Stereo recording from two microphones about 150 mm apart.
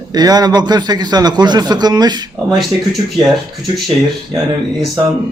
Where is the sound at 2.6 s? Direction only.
Centre (ahead or behind).